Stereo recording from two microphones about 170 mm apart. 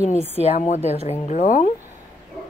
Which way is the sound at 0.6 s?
40° left (ahead or behind).